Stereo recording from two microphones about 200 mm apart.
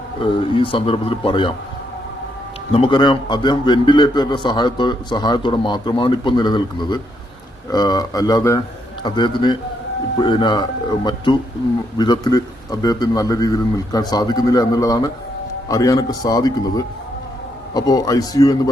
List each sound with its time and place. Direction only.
0.2 s a man's voice: 25° left (ahead or behind)
2.7 s a man's voice: 25° left (ahead or behind)